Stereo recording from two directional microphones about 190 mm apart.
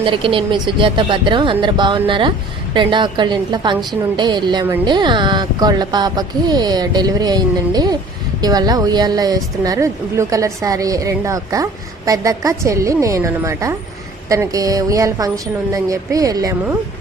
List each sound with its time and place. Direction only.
0.0 s a woman's voice: 25° right (ahead or behind)